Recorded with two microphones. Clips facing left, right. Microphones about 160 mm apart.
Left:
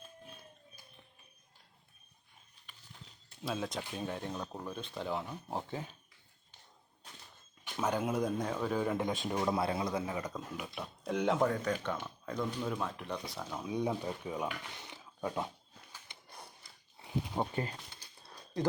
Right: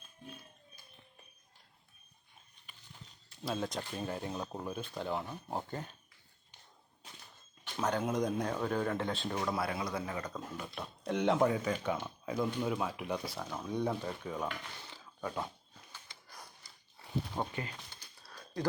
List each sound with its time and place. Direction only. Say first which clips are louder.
3.4 s speech: right 1 dB; centre (ahead or behind)
7.6 s speech: even; 5° left (ahead or behind)
16.0 s printer: left 3 dB; 25° left (ahead or behind)
17.0 s a sound: left 2 dB; 15° left (ahead or behind)
17.5 s speech: left 4 dB; 35° left (ahead or behind)
18.2 s a sound: left 2 dB; 25° left (ahead or behind)